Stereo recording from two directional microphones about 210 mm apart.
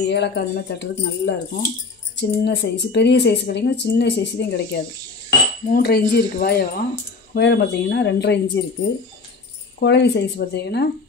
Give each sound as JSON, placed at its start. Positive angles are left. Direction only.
{"t": 0.0, "sound": "speech", "side_deg": 55}
{"t": 9.8, "sound": "speech", "side_deg": 55}